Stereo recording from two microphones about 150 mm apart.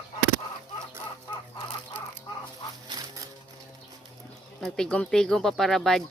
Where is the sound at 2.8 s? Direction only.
25° right (ahead or behind).